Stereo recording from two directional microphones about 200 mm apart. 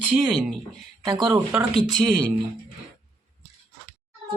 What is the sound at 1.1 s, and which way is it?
Speech, 20° right (ahead or behind).